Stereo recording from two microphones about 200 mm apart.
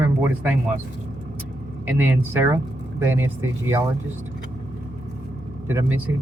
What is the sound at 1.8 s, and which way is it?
Speech, 10° right (ahead or behind).